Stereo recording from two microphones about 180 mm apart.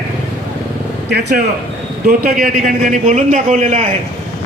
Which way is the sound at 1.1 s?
65° right (ahead or behind).